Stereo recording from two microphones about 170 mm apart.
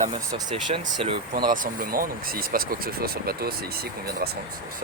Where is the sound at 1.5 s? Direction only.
55° right (ahead or behind).